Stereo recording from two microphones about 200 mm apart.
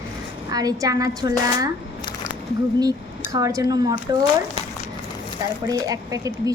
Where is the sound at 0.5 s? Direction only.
20° right (ahead or behind).